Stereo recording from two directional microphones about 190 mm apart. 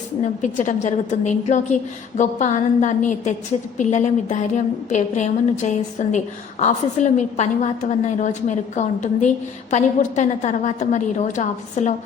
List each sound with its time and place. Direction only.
0.4 s a woman's voice: 40° left (ahead or behind)